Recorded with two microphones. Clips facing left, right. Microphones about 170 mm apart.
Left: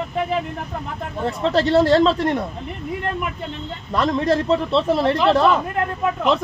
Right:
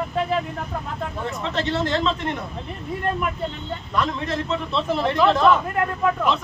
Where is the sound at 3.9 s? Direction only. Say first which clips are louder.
Left 6 dB; 35° left (ahead or behind).